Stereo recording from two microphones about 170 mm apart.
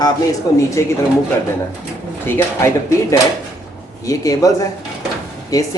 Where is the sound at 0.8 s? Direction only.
15° left (ahead or behind).